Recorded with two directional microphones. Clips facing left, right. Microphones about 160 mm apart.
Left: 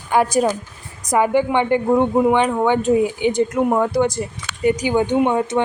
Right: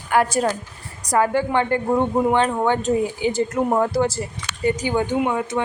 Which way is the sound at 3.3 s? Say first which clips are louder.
Left 3 dB; 5° right (ahead or behind).